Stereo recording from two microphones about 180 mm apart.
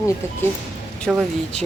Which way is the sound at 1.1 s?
Centre (ahead or behind).